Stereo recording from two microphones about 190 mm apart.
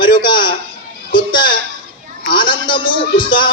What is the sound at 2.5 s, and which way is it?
Speech, 25° left (ahead or behind).